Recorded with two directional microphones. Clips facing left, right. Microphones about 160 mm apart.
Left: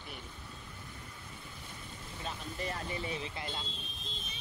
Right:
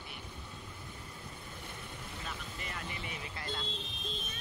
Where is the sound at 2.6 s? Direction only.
35° left (ahead or behind).